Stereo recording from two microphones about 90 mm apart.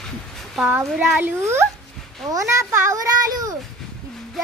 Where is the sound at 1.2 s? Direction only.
25° right (ahead or behind).